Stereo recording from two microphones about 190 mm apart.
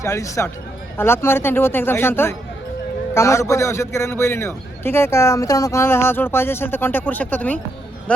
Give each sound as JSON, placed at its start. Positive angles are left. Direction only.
{"t": 0.0, "sound": "a man's voice", "side_deg": 15}